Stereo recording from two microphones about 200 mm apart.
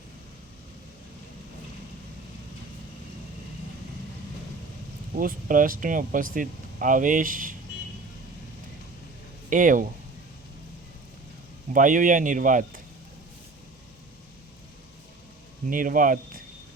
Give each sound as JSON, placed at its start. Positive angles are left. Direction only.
{"t": 5.1, "sound": "speech", "side_deg": -45}
{"t": 9.5, "sound": "speech", "side_deg": -40}
{"t": 11.7, "sound": "speech", "side_deg": -40}
{"t": 15.7, "sound": "speech", "side_deg": -45}